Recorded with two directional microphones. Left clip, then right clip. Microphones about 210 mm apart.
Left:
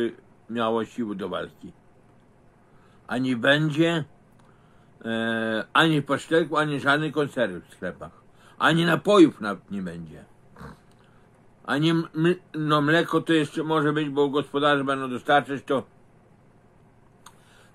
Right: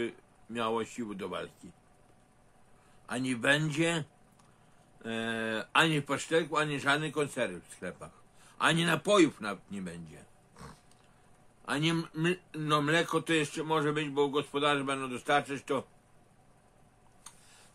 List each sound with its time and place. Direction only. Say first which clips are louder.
0.0 s speech: left 8 dB; 15° right (ahead or behind)
3.1 s speech: left 7 dB; 15° right (ahead or behind)
10.1 s a sound: left 7 dB; 20° right (ahead or behind)
11.6 s speech: left 8 dB; 15° right (ahead or behind)